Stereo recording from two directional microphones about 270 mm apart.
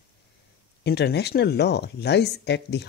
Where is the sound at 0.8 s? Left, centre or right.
Left.